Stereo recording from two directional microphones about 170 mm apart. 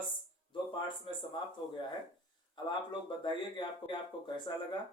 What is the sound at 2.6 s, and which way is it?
Speech, 25° left (ahead or behind).